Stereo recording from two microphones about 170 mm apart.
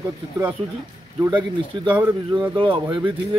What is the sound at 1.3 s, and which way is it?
Speech, 25° right (ahead or behind).